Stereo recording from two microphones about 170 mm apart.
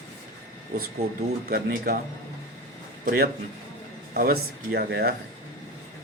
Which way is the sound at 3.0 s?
60° right (ahead or behind).